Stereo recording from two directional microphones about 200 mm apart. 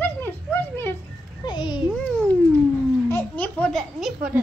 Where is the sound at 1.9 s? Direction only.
5° left (ahead or behind).